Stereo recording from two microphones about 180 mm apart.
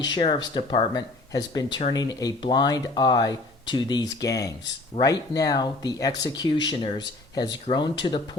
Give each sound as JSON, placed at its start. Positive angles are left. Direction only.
{"t": 0.0, "sound": "speech", "side_deg": 25}